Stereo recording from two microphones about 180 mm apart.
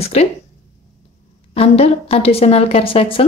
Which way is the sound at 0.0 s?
35° left (ahead or behind).